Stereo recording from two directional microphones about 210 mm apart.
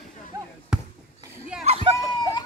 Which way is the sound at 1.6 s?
30° right (ahead or behind).